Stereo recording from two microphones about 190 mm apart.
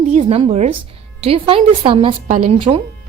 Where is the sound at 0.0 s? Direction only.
35° right (ahead or behind).